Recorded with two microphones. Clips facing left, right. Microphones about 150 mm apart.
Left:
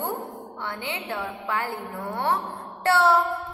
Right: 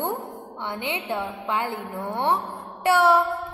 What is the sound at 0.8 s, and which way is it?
A woman's voice, 20° right (ahead or behind).